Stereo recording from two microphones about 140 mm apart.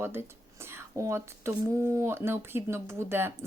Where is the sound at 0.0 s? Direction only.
15° right (ahead or behind).